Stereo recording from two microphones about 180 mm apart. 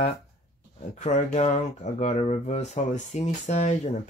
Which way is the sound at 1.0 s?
40° left (ahead or behind).